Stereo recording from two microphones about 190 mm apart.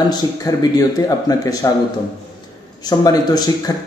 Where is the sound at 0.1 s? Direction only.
20° left (ahead or behind).